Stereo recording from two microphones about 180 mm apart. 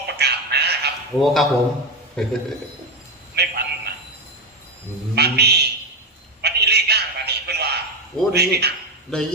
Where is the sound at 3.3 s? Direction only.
65° right (ahead or behind).